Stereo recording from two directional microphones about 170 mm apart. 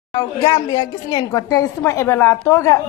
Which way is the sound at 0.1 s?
20° left (ahead or behind).